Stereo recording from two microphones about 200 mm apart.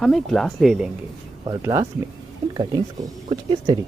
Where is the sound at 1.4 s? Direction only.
15° right (ahead or behind).